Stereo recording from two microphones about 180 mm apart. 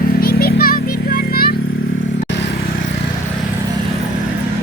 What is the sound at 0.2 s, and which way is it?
Music, 55° left (ahead or behind).